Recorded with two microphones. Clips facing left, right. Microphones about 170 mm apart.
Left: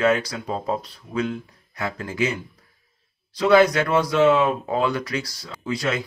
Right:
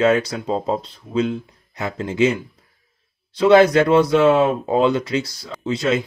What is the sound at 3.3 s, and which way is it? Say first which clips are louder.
Speech: right 4 dB; 25° right (ahead or behind).